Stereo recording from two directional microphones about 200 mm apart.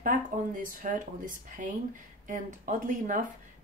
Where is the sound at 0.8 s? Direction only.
40° right (ahead or behind).